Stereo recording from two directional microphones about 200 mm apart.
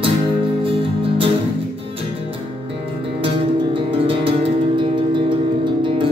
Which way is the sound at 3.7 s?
25° right (ahead or behind).